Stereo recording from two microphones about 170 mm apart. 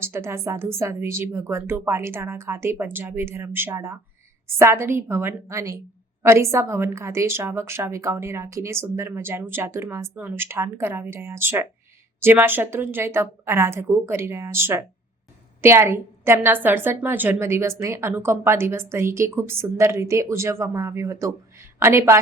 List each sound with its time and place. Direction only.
0.0 s a woman's voice: 15° right (ahead or behind)